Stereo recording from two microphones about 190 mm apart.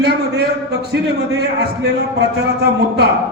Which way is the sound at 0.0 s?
60° right (ahead or behind).